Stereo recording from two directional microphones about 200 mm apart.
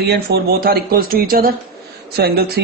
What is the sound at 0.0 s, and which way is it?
A man's voice, 55° right (ahead or behind).